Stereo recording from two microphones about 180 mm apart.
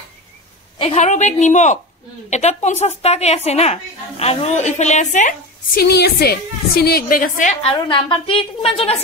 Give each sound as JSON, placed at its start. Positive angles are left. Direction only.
{"t": 0.7, "sound": "a woman's voice", "side_deg": 35}
{"t": 5.8, "sound": "a woman's voice", "side_deg": 65}
{"t": 7.6, "sound": "a woman's voice", "side_deg": 25}